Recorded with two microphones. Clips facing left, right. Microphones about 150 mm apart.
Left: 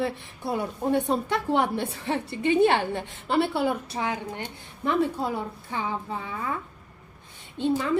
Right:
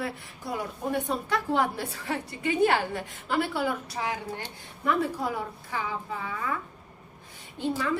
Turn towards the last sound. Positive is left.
turn(degrees=20)  # may be behind; listen again after turning